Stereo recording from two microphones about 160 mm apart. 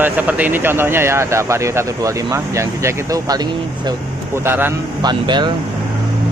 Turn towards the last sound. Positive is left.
turn(degrees=-30)  # may be behind; listen again after turning